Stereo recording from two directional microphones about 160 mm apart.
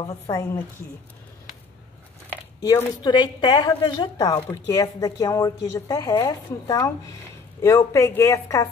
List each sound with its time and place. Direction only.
0.3 s speech: 15° left (ahead or behind)
2.6 s a woman's voice: 20° left (ahead or behind)